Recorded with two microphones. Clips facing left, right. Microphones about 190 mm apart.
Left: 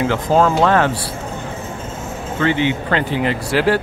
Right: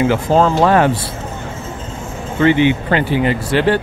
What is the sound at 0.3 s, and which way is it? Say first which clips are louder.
Speech: even; centre (ahead or behind).